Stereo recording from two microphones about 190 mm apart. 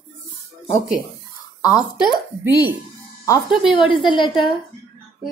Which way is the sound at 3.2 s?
20° left (ahead or behind).